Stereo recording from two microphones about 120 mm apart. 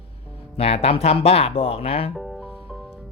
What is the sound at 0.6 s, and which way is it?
Speech, 55° left (ahead or behind).